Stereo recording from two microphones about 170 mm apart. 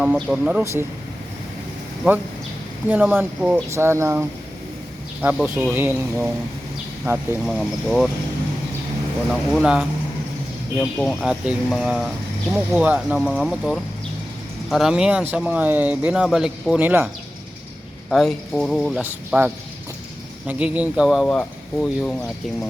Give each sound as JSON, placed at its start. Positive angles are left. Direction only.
{"t": 0.0, "sound": "speech", "side_deg": -5}
{"t": 2.8, "sound": "speech", "side_deg": -10}
{"t": 9.5, "sound": "speech", "side_deg": -5}
{"t": 18.1, "sound": "speech", "side_deg": 0}
{"t": 20.5, "sound": "speech", "side_deg": -10}